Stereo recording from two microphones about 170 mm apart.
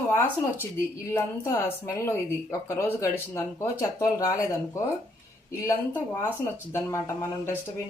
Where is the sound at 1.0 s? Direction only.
15° left (ahead or behind).